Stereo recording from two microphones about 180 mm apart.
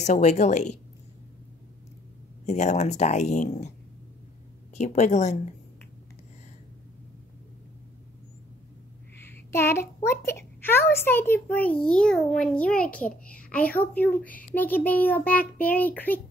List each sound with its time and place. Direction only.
0.0 s speech: 40° left (ahead or behind)
2.4 s speech: 40° left (ahead or behind)
4.7 s speech: 40° left (ahead or behind)
9.2 s a child's voice: 15° left (ahead or behind)